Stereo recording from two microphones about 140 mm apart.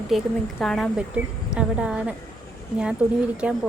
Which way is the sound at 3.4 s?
10° right (ahead or behind).